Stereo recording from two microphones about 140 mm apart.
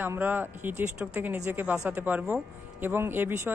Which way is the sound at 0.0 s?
15° right (ahead or behind).